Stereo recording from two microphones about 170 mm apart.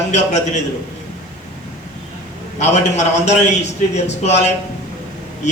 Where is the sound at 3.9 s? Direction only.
40° left (ahead or behind).